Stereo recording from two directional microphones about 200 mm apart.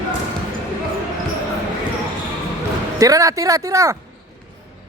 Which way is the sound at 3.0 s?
15° right (ahead or behind).